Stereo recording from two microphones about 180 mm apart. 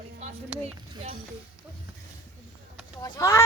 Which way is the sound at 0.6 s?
35° right (ahead or behind).